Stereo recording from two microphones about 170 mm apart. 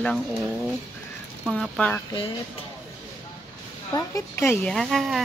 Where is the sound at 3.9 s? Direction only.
15° left (ahead or behind); by 5.2 s centre (ahead or behind).